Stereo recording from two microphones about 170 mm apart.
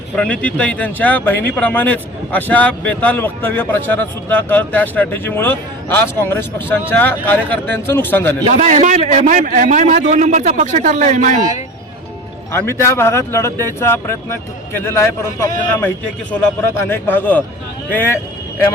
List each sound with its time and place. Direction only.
0.2 s speech: 10° left (ahead or behind)
8.4 s a man's voice: 45° right (ahead or behind)
12.5 s speech: 15° left (ahead or behind)
16.9 s speech: 10° left (ahead or behind)